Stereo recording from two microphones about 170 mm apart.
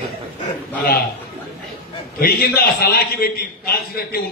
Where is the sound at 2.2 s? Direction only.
60° left (ahead or behind).